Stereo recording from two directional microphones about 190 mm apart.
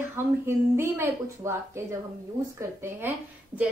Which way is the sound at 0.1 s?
10° right (ahead or behind).